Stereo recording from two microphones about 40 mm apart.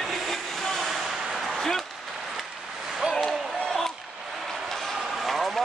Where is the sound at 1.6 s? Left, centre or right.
Centre.